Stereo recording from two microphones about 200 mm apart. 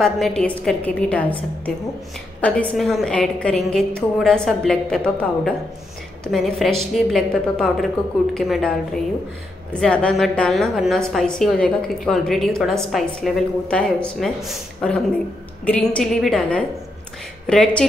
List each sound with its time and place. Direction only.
0.0 s a woman's voice: 5° left (ahead or behind)
2.4 s a woman's voice: 5° left (ahead or behind)